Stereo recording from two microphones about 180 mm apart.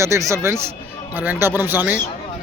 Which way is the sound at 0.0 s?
15° right (ahead or behind).